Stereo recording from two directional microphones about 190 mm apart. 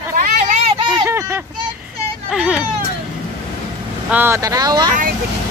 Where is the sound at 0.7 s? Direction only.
20° right (ahead or behind).